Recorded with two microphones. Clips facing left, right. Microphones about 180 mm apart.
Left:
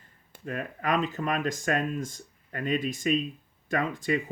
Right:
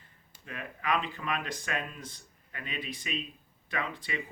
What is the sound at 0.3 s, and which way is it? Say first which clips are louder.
Speech: left 8 dB; 45° left (ahead or behind).